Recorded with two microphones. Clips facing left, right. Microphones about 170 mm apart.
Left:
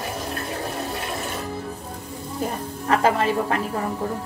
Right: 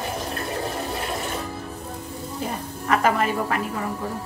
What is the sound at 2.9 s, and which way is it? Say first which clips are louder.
Speech: left 1 dB; 30° left (ahead or behind).